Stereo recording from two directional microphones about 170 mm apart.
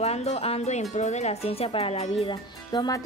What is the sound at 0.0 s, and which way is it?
Speech, 40° left (ahead or behind).